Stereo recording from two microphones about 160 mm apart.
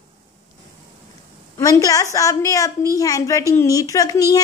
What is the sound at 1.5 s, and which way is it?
A woman's voice, 20° left (ahead or behind).